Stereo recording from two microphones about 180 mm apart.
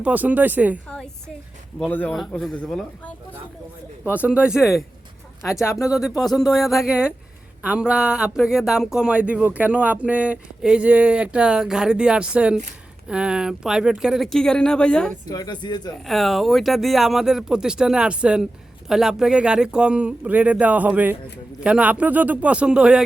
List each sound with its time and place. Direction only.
0.0 s speech: 10° right (ahead or behind)
1.8 s speech: 10° left (ahead or behind)
4.1 s speech: 5° right (ahead or behind)
15.3 s speech: 20° left (ahead or behind)
16.0 s speech: centre (ahead or behind)